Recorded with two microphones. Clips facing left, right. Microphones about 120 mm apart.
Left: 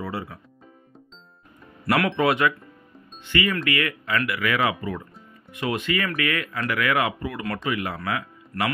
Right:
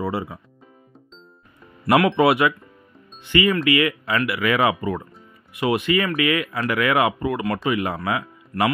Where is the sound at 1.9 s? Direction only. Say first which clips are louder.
Right 5 dB; 15° right (ahead or behind).